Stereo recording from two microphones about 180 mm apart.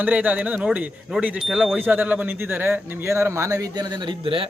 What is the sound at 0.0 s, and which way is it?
Speech, 10° right (ahead or behind).